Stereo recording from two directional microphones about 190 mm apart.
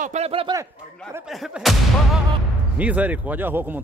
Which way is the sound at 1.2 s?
Centre (ahead or behind).